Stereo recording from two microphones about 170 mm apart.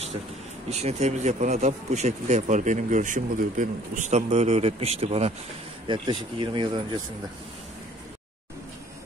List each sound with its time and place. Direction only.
0.7 s speech: 40° right (ahead or behind)